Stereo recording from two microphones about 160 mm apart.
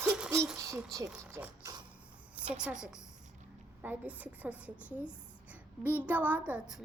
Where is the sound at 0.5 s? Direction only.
20° right (ahead or behind).